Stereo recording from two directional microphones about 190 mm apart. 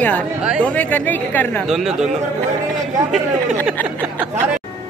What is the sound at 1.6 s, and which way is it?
Speech, 5° right (ahead or behind).